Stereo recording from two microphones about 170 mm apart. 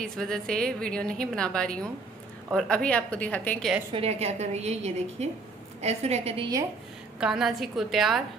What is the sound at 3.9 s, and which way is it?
A woman's voice, 40° right (ahead or behind).